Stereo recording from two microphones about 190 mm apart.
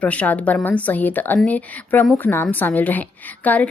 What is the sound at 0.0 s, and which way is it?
A woman's voice, 5° left (ahead or behind).